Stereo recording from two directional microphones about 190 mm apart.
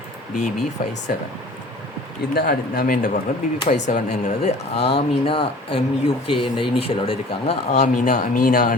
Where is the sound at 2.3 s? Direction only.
50° left (ahead or behind).